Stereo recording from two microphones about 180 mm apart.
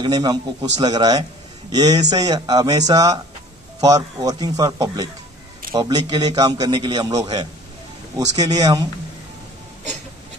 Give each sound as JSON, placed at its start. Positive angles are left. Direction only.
{"t": 0.0, "sound": "a man's voice", "side_deg": -25}